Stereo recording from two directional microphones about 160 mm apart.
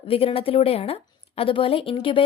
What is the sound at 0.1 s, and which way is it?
A woman's voice, 35° left (ahead or behind).